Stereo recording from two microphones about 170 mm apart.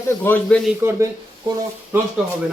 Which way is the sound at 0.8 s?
15° right (ahead or behind).